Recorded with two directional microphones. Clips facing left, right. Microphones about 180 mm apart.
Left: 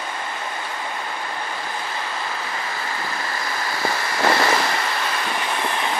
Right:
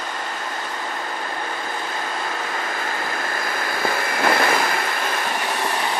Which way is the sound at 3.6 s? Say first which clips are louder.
Right 1 dB; 50° right (ahead or behind).